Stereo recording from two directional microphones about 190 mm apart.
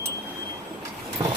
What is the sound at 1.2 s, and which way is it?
Vehicle, 25° right (ahead or behind).